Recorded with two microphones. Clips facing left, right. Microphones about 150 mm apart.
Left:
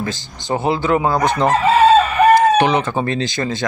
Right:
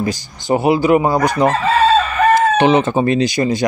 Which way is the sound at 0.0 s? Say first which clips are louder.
Right 4 dB; 15° right (ahead or behind).